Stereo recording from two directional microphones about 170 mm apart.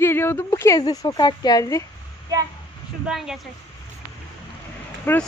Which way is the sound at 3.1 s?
Centre (ahead or behind).